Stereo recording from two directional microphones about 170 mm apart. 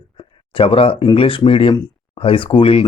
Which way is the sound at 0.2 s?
30° left (ahead or behind).